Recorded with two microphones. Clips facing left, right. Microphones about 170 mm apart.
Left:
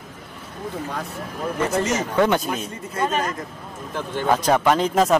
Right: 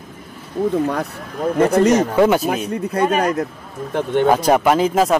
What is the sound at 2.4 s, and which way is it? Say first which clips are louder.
Speech: right 8 dB; 65° right (ahead or behind).